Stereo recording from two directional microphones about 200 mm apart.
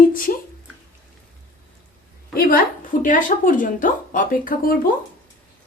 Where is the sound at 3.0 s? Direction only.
40° left (ahead or behind).